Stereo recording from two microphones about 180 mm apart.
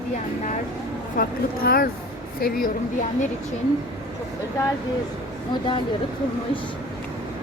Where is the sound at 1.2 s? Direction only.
55° left (ahead or behind).